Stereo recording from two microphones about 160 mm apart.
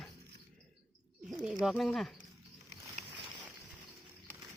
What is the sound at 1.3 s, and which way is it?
Speech, centre (ahead or behind).